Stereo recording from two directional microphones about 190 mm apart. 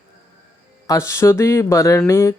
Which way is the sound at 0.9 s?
15° left (ahead or behind).